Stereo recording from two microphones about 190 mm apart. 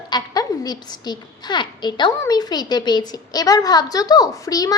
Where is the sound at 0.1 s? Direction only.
20° left (ahead or behind).